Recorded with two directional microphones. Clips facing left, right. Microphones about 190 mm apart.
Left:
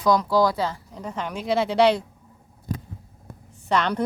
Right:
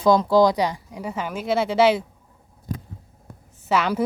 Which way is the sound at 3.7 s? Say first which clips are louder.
Right 1 dB; 5° right (ahead or behind).